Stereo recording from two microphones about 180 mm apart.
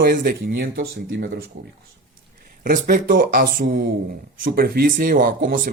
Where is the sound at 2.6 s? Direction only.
50° right (ahead or behind).